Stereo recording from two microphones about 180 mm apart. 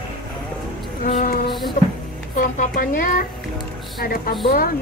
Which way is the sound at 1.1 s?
50° left (ahead or behind).